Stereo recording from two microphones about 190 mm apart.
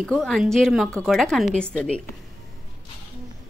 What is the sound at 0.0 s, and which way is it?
Speech, centre (ahead or behind).